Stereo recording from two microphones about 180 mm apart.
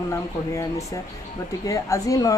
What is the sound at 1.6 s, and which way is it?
Speech, 20° left (ahead or behind).